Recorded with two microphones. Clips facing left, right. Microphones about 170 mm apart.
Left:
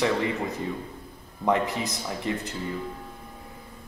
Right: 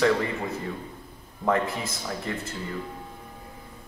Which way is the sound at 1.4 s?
20° left (ahead or behind).